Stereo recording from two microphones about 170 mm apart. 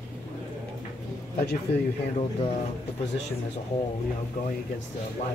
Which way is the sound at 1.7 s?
75° left (ahead or behind).